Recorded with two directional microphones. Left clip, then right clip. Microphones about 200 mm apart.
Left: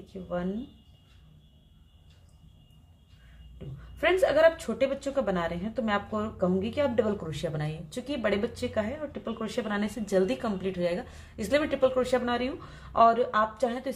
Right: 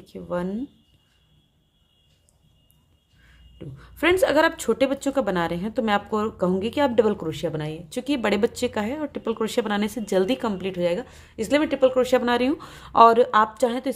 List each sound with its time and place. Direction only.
0.0 s a woman's voice: 45° right (ahead or behind)
3.5 s a woman's voice: 45° right (ahead or behind)